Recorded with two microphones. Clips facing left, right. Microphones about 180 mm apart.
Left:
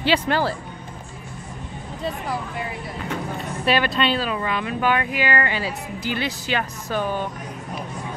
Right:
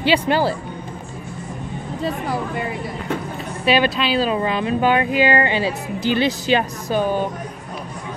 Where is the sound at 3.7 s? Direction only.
Centre (ahead or behind).